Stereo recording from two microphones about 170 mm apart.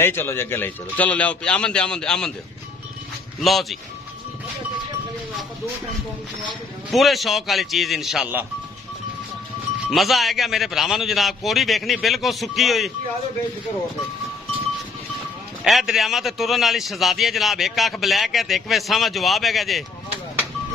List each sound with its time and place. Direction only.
0.0 s speech: 15° left (ahead or behind)
3.3 s speech: centre (ahead or behind)
6.9 s a man's voice: centre (ahead or behind)
9.8 s a man's voice: centre (ahead or behind)
15.6 s a man's voice: centre (ahead or behind)